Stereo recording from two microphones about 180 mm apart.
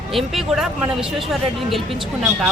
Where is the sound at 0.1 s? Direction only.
Centre (ahead or behind).